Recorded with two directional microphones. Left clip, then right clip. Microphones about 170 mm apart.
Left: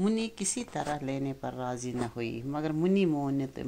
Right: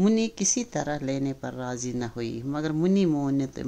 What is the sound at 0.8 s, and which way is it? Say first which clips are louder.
Speech: right 4 dB; 30° right (ahead or behind).